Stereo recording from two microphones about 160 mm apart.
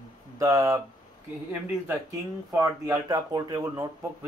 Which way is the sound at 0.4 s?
20° right (ahead or behind).